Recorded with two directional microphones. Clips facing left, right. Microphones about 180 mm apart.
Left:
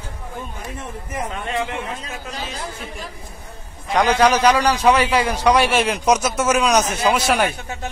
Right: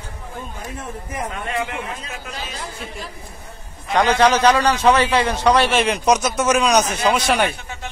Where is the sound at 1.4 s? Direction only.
25° left (ahead or behind).